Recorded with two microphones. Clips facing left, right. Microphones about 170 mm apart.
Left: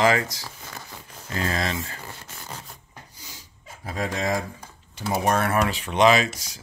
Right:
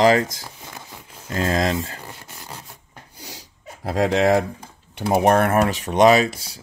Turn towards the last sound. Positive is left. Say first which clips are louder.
# right 4 dB
turn(degrees=-30)  # may be behind; listen again after turning